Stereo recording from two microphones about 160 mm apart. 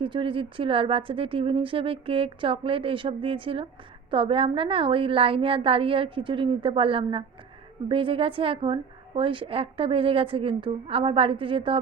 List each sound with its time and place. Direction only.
0.0 s a woman's voice: 30° right (ahead or behind)